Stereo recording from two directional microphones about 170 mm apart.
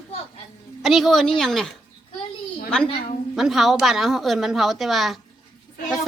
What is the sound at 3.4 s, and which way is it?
A woman's voice, centre (ahead or behind).